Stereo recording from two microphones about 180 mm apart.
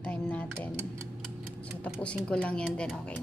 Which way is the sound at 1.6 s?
5° left (ahead or behind).